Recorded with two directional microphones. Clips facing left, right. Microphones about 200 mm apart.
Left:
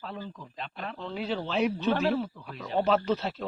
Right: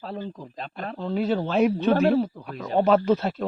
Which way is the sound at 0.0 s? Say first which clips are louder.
Right 6 dB; 35° right (ahead or behind).